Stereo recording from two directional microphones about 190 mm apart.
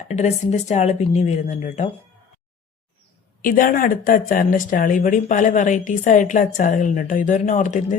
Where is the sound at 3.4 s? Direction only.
45° left (ahead or behind).